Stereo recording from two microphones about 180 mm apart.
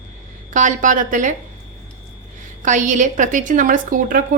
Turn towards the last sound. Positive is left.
turn(degrees=-50)  # may be behind; listen again after turning